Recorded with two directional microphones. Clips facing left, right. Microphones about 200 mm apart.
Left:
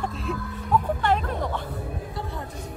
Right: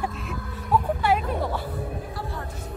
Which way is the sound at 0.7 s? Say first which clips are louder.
Even; 5° right (ahead or behind).